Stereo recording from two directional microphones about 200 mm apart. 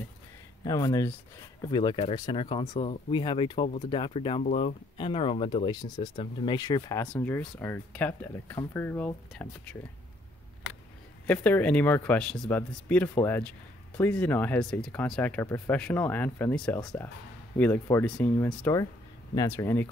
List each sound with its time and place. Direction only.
0.7 s speech: 20° left (ahead or behind)
11.2 s speech: 5° left (ahead or behind)